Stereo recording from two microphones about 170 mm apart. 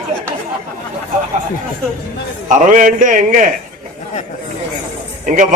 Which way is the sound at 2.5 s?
50° right (ahead or behind).